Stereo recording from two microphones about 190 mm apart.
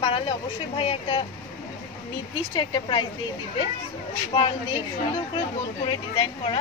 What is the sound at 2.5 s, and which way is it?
Speech, 20° left (ahead or behind).